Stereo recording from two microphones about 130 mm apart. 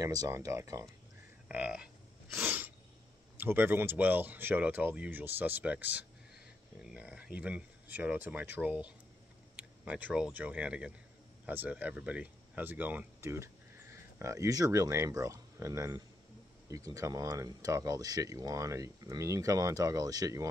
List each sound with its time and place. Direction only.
0.0 s speech: 25° right (ahead or behind)
1.5 s speech: 10° right (ahead or behind)
2.3 s sneeze: 15° right (ahead or behind)
3.3 s speech: 15° right (ahead or behind)